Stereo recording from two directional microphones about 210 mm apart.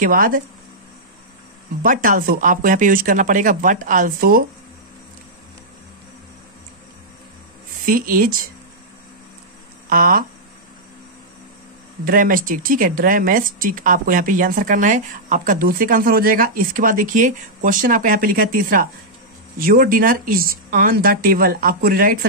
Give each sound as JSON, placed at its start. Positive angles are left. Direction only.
{"t": 0.0, "sound": "speech", "side_deg": -40}
{"t": 1.8, "sound": "speech", "side_deg": -40}
{"t": 7.8, "sound": "speech", "side_deg": -40}
{"t": 9.8, "sound": "speech", "side_deg": -45}
{"t": 12.0, "sound": "speech", "side_deg": -40}